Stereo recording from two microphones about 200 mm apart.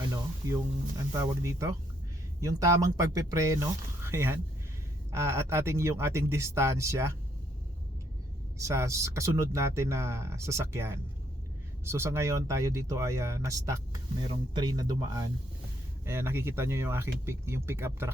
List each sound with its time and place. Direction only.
0.1 s a sound: 15° right (ahead or behind)
1.2 s speech: 15° right (ahead or behind)
8.5 s speech: 15° right (ahead or behind)